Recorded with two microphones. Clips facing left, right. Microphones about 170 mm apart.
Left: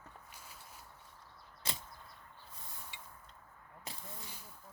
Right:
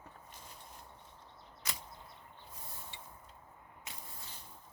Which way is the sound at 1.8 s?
20° right (ahead or behind).